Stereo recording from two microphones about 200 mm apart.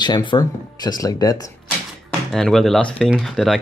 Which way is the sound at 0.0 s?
20° left (ahead or behind).